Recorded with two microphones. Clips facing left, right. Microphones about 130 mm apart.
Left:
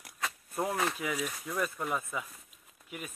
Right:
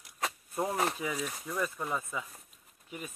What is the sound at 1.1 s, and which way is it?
Speech, 5° left (ahead or behind).